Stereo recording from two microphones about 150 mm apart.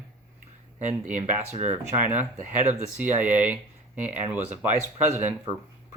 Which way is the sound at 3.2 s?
10° right (ahead or behind).